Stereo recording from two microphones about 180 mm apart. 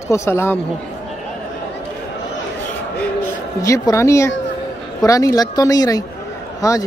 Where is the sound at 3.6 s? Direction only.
20° left (ahead or behind).